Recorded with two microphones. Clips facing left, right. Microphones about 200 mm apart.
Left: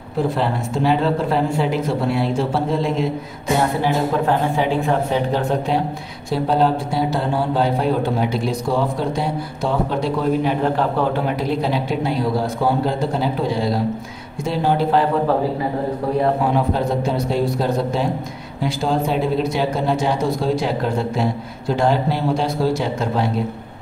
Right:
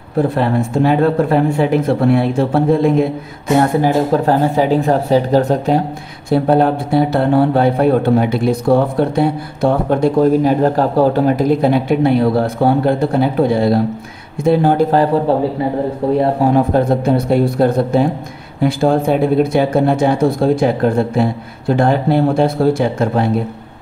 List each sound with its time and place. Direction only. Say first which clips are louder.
0.2 s speech: right 6 dB; 55° right (ahead or behind)
3.8 s speech: right 5 dB; 40° right (ahead or behind)
6.3 s speech: right 5 dB; 55° right (ahead or behind)
16.5 s speech: right 6 dB; 55° right (ahead or behind)